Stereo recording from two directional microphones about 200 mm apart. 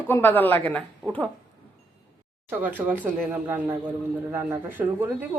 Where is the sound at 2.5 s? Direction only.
10° right (ahead or behind).